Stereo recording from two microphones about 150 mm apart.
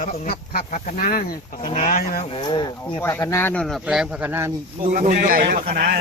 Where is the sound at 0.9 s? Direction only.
65° left (ahead or behind).